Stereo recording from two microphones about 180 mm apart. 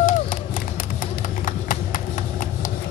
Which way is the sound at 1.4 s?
45° left (ahead or behind).